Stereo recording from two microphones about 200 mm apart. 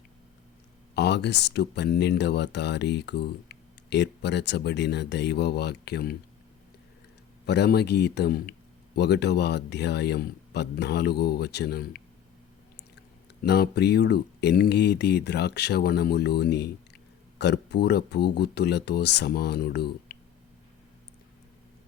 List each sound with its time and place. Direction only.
0.9 s speech: 60° left (ahead or behind)
7.4 s speech: 55° left (ahead or behind)
13.4 s speech: 55° left (ahead or behind)